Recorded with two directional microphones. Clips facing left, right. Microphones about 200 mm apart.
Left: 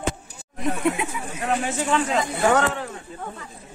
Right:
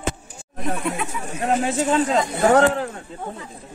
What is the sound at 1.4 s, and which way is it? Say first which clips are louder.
Speech: right 4 dB; 35° right (ahead or behind).